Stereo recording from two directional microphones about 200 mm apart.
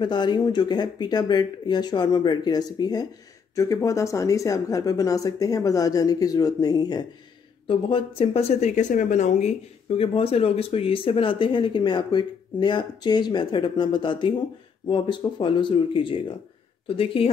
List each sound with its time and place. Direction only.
0.0 s speech: 20° left (ahead or behind)